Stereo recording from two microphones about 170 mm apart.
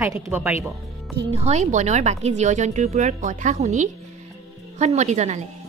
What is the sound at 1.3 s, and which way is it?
Speech, 40° right (ahead or behind).